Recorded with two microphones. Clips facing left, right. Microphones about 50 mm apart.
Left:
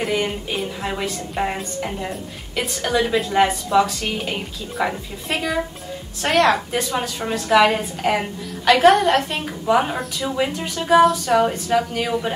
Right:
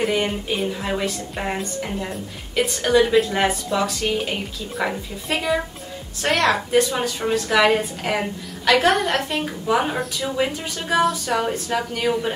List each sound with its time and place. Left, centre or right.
0.5 s a woman's voice: centre